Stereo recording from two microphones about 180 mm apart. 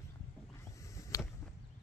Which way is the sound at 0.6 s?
15° left (ahead or behind).